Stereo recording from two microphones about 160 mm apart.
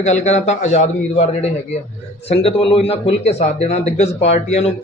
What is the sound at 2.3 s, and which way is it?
Speech, 40° left (ahead or behind).